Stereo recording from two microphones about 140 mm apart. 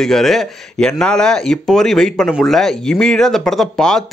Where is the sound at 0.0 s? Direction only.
Centre (ahead or behind).